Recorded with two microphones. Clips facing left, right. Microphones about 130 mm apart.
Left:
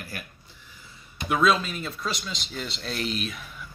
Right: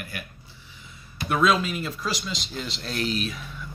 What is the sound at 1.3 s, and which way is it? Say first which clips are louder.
Speech: right 1 dB; centre (ahead or behind).